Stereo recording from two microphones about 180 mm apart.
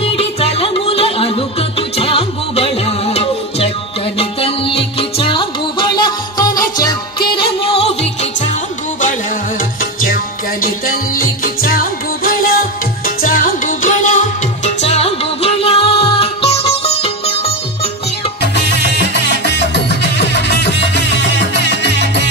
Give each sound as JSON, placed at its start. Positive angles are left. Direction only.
{"t": 0.0, "sound": "music", "side_deg": 35}
{"t": 10.0, "sound": "music", "side_deg": 55}
{"t": 18.4, "sound": "music", "side_deg": 70}